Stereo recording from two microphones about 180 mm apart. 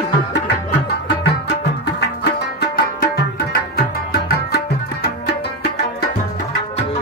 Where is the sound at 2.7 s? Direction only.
55° left (ahead or behind).